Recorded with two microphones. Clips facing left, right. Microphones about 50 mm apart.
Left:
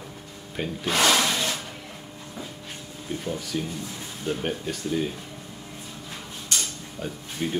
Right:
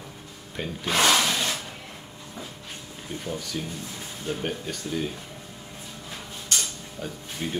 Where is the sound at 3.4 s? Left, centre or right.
Centre.